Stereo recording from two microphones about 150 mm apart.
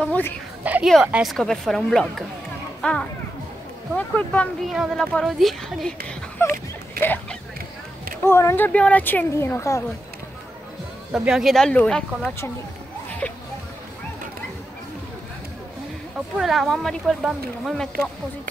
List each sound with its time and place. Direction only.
0.0 s a woman's voice: 10° left (ahead or behind)
0.8 s speech: centre (ahead or behind)
4.6 s speech: centre (ahead or behind); by 9.8 s 20° left (ahead or behind)
11.1 s speech: 5° right (ahead or behind)
16.3 s speech: centre (ahead or behind)